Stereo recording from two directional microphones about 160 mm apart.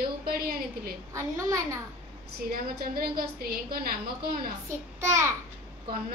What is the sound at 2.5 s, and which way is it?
Speech, 70° right (ahead or behind).